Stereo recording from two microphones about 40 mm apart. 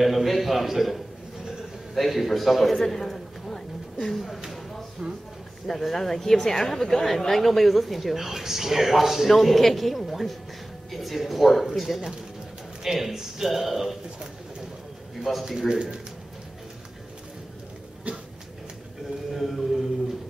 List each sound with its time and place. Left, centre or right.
0.0 s a sound: centre
2.0 s a woman's voice: centre
3.0 s a sound: centre
5.0 s speech: centre
5.7 s a woman's voice: centre
15.7 s speech: right
19.3 s a woman's voice: centre